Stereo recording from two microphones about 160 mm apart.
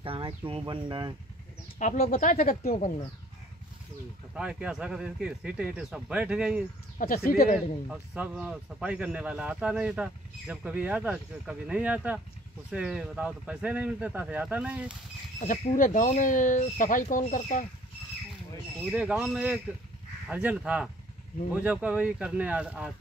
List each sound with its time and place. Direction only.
0.0 s speech: 35° right (ahead or behind)
1.8 s speech: 55° left (ahead or behind)
4.3 s speech: 5° right (ahead or behind)
7.2 s speech: 65° left (ahead or behind)
7.5 s speech: 5° right (ahead or behind)
15.4 s speech: 55° left (ahead or behind)
18.9 s speech: 5° right (ahead or behind)